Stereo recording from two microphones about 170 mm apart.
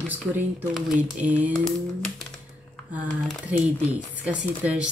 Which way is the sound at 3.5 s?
10° right (ahead or behind).